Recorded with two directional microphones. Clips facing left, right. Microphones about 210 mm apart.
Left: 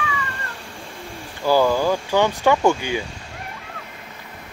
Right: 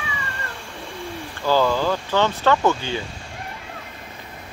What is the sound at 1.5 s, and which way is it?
Speech, 10° left (ahead or behind).